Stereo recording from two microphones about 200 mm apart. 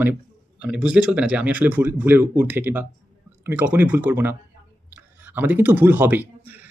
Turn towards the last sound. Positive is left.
turn(degrees=-10)  # may be behind; listen again after turning